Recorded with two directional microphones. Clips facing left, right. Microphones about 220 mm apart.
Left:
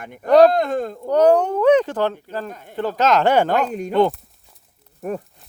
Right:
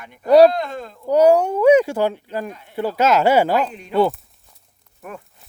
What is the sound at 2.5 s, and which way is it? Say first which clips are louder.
Speech: left 1 dB; 45° left (ahead or behind).